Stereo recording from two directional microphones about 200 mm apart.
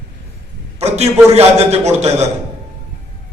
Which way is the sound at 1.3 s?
30° right (ahead or behind).